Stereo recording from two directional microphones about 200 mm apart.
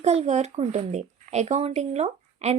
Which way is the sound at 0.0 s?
30° right (ahead or behind).